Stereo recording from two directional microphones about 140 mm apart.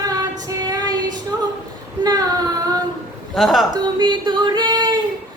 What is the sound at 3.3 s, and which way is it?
Speech, centre (ahead or behind).